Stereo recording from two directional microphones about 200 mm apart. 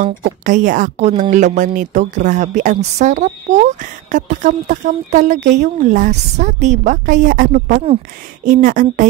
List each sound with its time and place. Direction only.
0.0 s a woman's voice: 40° right (ahead or behind)